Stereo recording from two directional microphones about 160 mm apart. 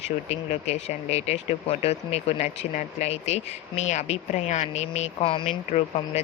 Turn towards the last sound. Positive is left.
turn(degrees=45)  # may be behind; listen again after turning